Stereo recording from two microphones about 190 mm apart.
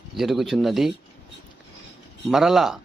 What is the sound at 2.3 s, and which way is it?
Speech, centre (ahead or behind).